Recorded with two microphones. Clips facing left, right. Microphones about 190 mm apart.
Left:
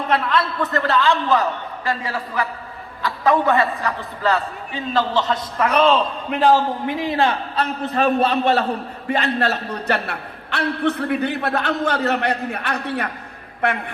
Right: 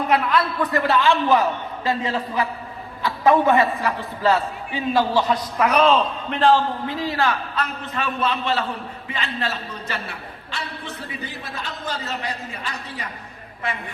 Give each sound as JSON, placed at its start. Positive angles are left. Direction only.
{"t": 0.1, "sound": "a man's voice", "side_deg": -5}
{"t": 5.3, "sound": "a man's voice", "side_deg": -5}
{"t": 9.2, "sound": "a man's voice", "side_deg": 65}